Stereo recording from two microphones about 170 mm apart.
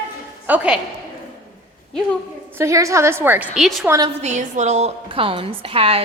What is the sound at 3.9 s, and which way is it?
Speech, 25° right (ahead or behind).